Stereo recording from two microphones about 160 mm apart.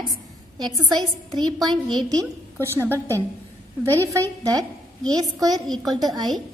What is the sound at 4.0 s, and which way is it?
Speech, 20° right (ahead or behind).